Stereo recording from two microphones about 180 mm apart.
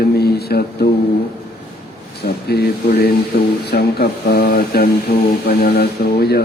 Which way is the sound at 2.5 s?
60° left (ahead or behind).